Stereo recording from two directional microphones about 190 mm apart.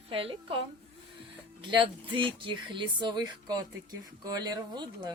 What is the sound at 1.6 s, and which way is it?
Speech, 25° right (ahead or behind).